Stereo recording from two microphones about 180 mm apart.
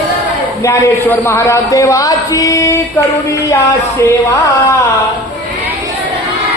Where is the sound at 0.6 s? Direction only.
15° left (ahead or behind).